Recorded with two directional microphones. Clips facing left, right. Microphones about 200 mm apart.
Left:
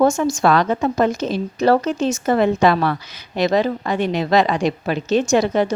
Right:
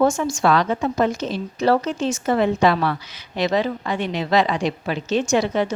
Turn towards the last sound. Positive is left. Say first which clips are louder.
# left 3 dB
turn(degrees=40)  # may be behind; listen again after turning